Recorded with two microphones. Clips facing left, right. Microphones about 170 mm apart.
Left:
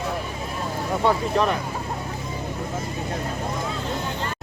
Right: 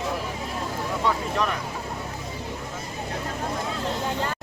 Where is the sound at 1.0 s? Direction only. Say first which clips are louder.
Left 5 dB; 35° left (ahead or behind).